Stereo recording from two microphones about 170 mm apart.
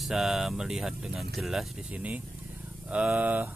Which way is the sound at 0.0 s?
Centre (ahead or behind).